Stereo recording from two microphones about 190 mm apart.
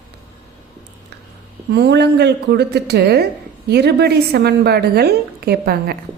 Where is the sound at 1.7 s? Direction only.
60° right (ahead or behind).